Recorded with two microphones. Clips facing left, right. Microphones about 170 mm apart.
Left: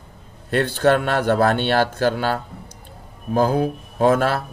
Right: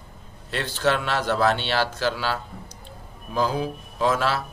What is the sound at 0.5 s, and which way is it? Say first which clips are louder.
Speech: left 7 dB; 55° left (ahead or behind).